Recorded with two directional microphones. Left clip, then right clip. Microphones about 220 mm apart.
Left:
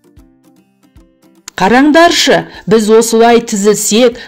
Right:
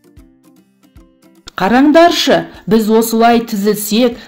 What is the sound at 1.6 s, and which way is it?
Speech, 25° left (ahead or behind).